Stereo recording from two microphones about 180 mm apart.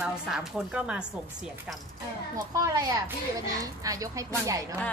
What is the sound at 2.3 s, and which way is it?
A woman's voice, 20° right (ahead or behind).